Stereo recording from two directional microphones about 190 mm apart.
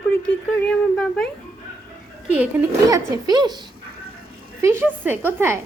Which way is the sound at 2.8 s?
20° right (ahead or behind).